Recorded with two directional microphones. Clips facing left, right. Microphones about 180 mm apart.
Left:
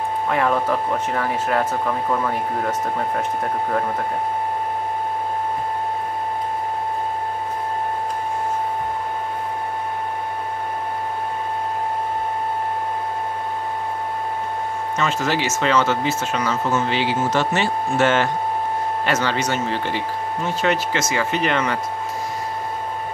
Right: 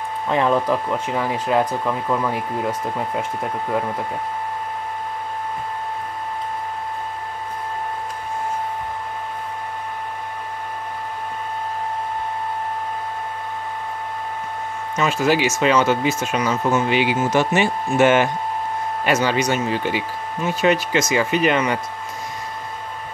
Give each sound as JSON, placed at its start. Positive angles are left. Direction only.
{"t": 0.3, "sound": "speech", "side_deg": -25}
{"t": 0.7, "sound": "speech", "side_deg": -15}
{"t": 15.0, "sound": "speech", "side_deg": -10}